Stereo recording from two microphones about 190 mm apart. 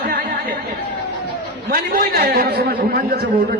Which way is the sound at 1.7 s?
55° right (ahead or behind).